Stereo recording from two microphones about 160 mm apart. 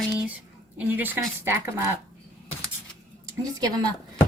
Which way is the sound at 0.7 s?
10° right (ahead or behind).